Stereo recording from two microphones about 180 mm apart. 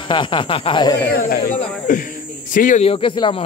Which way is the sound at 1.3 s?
50° left (ahead or behind).